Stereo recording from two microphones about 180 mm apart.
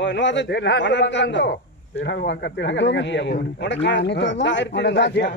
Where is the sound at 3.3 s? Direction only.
70° left (ahead or behind).